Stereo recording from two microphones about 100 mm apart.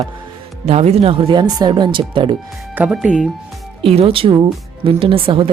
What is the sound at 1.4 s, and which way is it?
Speech, 40° right (ahead or behind).